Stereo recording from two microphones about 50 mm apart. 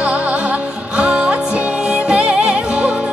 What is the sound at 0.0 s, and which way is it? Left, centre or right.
Music, right.